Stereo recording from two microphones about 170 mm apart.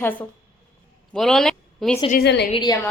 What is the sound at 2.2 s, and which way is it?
Speech, 80° left.